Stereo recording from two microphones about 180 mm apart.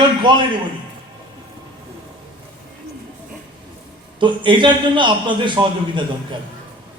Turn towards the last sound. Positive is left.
turn(degrees=-25)  # may be behind; listen again after turning